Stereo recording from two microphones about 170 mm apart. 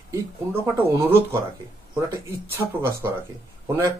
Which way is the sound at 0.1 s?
15° right (ahead or behind).